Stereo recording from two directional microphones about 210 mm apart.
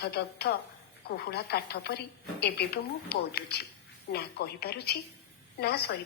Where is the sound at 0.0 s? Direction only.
50° left (ahead or behind).